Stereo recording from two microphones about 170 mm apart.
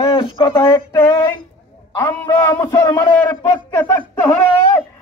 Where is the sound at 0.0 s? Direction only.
30° left (ahead or behind).